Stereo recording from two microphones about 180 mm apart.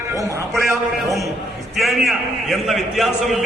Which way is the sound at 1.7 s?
Centre (ahead or behind).